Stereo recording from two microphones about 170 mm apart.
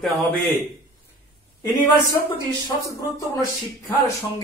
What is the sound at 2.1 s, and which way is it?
Speech, 30° left (ahead or behind).